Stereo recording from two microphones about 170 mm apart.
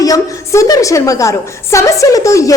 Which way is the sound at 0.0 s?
20° left (ahead or behind).